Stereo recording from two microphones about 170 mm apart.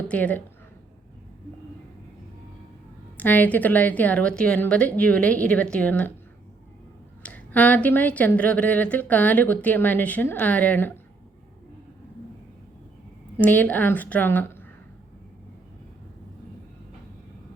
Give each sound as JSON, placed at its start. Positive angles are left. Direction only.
{"t": 0.1, "sound": "speech", "side_deg": 10}
{"t": 3.2, "sound": "speech", "side_deg": 10}
{"t": 7.2, "sound": "speech", "side_deg": 10}
{"t": 13.3, "sound": "speech", "side_deg": 10}